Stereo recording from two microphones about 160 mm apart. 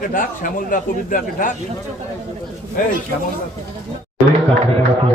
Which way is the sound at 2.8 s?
60° left (ahead or behind).